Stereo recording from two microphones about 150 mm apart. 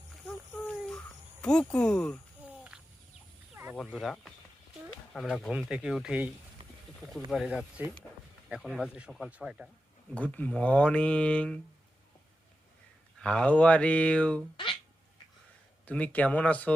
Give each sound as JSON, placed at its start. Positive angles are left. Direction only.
{"t": 0.3, "sound": "a sound", "side_deg": 10}
{"t": 0.9, "sound": "cricket", "side_deg": 5}
{"t": 2.5, "sound": "a sound", "side_deg": -5}
{"t": 3.8, "sound": "speech", "side_deg": -5}
{"t": 5.1, "sound": "speech", "side_deg": 0}
{"t": 10.2, "sound": "speech", "side_deg": 10}
{"t": 13.1, "sound": "speech", "side_deg": 5}
{"t": 14.5, "sound": "a sound", "side_deg": 35}
{"t": 15.9, "sound": "speech", "side_deg": 10}